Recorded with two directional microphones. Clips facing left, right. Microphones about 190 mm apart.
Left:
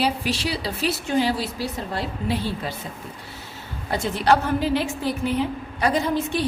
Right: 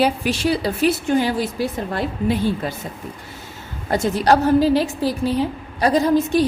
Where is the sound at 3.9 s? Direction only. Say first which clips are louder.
Right 4 dB; 45° right (ahead or behind).